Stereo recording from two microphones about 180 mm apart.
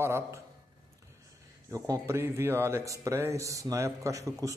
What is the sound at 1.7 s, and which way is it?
Speech, 15° right (ahead or behind).